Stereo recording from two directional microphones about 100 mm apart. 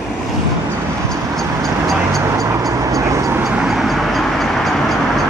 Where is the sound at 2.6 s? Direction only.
35° right (ahead or behind).